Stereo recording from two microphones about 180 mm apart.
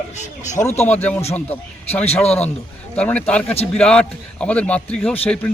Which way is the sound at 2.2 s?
35° left (ahead or behind).